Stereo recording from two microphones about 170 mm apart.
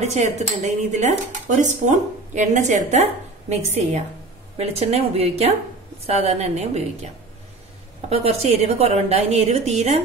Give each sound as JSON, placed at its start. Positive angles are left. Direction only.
{"t": 0.0, "sound": "a woman's voice", "side_deg": -40}
{"t": 8.1, "sound": "a woman's voice", "side_deg": -35}